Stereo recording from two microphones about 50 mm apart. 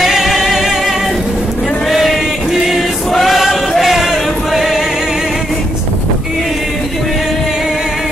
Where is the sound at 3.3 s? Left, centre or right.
Centre.